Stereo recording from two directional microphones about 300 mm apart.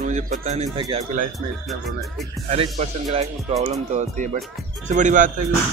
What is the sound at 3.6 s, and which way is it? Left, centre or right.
Speech, right.